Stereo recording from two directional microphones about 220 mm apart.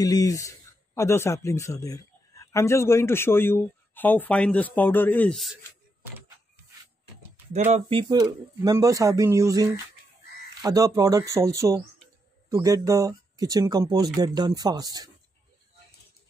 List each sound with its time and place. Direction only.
0.0 s speech: 15° left (ahead or behind)
7.5 s speech: 30° right (ahead or behind)
8.0 s speech: 20° right (ahead or behind)